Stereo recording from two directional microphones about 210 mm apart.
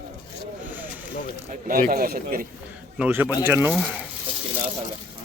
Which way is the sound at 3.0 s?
10° right (ahead or behind).